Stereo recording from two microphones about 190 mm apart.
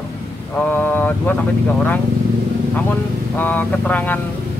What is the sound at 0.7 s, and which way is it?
Speech, 10° left (ahead or behind).